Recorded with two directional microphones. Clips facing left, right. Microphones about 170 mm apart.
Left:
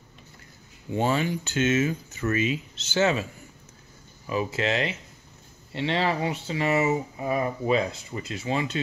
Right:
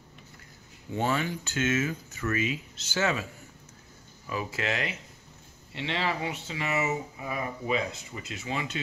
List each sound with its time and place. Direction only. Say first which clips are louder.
0.9 s speech: left 4 dB; 20° left (ahead or behind)
4.3 s speech: left 6 dB; 25° left (ahead or behind)
5.7 s speech: left 5 dB; 35° left (ahead or behind)